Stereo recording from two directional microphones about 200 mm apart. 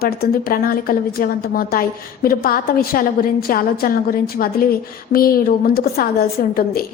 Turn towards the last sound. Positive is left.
turn(degrees=50)  # may be behind; listen again after turning